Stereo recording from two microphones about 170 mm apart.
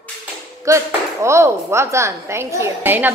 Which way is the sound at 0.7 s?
15° right (ahead or behind).